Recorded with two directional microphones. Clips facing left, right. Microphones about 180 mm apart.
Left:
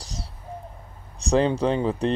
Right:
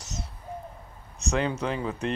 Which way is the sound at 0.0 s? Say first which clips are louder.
Left 1 dB; 35° left (ahead or behind).